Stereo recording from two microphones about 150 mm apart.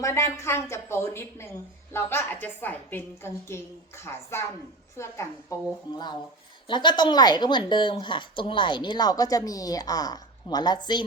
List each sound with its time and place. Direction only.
0.0 s a woman's voice: 20° left (ahead or behind)
6.7 s speech: 30° left (ahead or behind)